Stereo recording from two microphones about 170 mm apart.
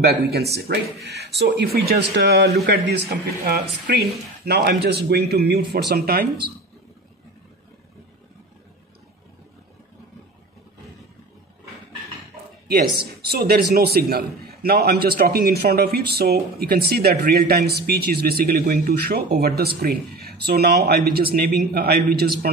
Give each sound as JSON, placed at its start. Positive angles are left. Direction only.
{"t": 0.0, "sound": "a man's voice", "side_deg": -70}
{"t": 1.0, "sound": "a man's voice", "side_deg": -75}
{"t": 4.5, "sound": "a man's voice", "side_deg": -75}
{"t": 12.6, "sound": "a man's voice", "side_deg": -65}